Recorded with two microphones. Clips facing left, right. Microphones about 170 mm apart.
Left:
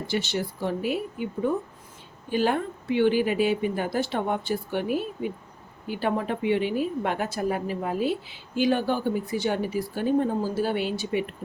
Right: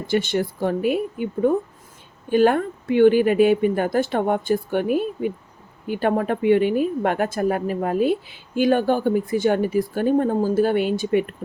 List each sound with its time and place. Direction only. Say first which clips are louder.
0.1 s a woman's voice: right 8 dB; 55° right (ahead or behind)